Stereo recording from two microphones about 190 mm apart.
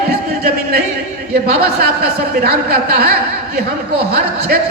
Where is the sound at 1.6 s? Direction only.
55° right (ahead or behind).